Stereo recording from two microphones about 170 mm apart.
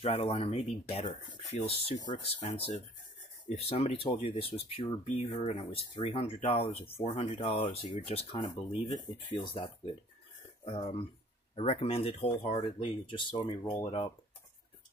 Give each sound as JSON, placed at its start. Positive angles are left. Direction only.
{"t": 0.0, "sound": "speech", "side_deg": 35}